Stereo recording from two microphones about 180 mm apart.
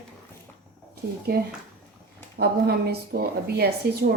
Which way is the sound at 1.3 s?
60° right (ahead or behind).